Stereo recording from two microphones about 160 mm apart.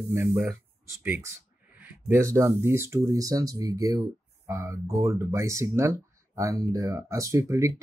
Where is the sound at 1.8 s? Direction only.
15° right (ahead or behind).